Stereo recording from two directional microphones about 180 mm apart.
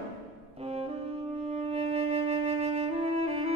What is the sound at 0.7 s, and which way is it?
Music, 35° right (ahead or behind).